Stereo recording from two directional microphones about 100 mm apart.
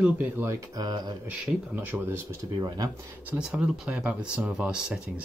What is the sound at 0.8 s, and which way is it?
Speech, 40° right (ahead or behind).